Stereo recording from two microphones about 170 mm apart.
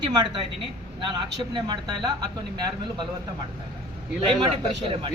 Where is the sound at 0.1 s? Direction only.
25° right (ahead or behind).